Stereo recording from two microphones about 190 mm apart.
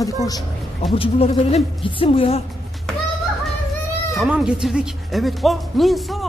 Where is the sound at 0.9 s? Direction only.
30° left (ahead or behind).